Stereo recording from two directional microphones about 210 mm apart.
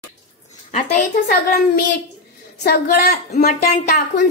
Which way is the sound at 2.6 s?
45° left (ahead or behind).